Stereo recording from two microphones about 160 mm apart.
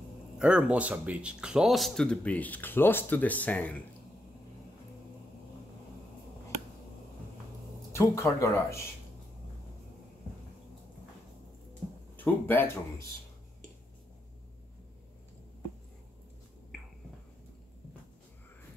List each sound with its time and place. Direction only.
0.4 s speech: 5° right (ahead or behind); by 3.7 s 10° left (ahead or behind)
7.9 s speech: 20° left (ahead or behind)
12.2 s speech: 10° left (ahead or behind)